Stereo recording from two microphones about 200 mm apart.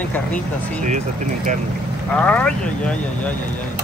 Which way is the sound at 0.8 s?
40° right (ahead or behind).